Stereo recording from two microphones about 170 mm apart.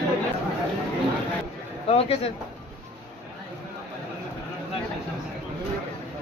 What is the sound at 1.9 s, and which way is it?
Speech, 35° left (ahead or behind).